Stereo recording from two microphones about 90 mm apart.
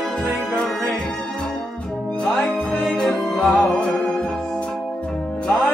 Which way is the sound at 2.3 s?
5° left (ahead or behind).